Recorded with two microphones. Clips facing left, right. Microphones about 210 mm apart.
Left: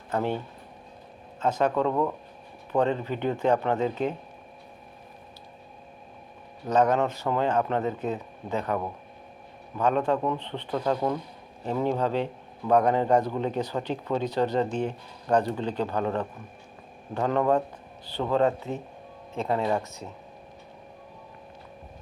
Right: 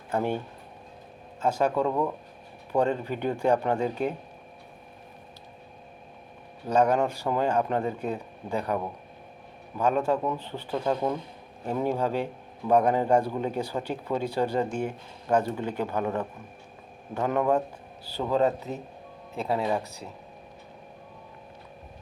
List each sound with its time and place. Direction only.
0.1 s speech: 10° right (ahead or behind)
1.4 s speech: 10° right (ahead or behind)
6.7 s speech: 10° right (ahead or behind)
19.8 s speech: 35° right (ahead or behind)